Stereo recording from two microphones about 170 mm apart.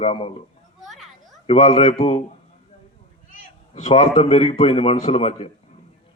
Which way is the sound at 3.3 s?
50° left (ahead or behind).